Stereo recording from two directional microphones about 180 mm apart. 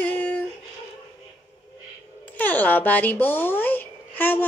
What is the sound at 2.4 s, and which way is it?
A child's voice, 10° left (ahead or behind).